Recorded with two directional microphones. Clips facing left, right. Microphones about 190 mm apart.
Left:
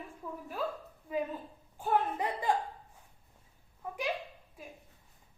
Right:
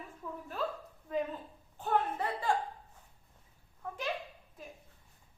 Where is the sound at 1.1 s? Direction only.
10° left (ahead or behind).